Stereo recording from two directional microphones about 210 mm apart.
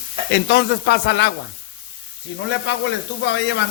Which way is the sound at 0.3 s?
55° left (ahead or behind).